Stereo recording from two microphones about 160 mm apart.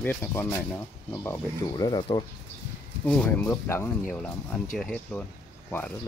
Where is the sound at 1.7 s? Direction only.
25° left (ahead or behind).